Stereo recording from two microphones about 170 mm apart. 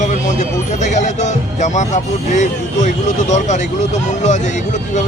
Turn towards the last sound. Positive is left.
turn(degrees=45)  # may be behind; listen again after turning